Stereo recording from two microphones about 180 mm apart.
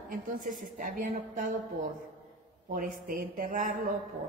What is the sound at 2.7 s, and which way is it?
A woman's voice, 50° right (ahead or behind).